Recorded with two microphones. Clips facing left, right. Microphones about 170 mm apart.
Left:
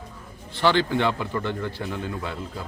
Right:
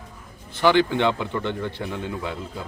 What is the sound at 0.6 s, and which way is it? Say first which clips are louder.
Speech: right 3 dB; 15° right (ahead or behind).